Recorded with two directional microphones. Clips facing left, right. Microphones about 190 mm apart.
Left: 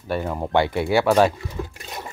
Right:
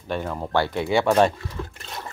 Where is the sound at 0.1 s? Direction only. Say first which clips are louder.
Left 3 dB; 10° left (ahead or behind).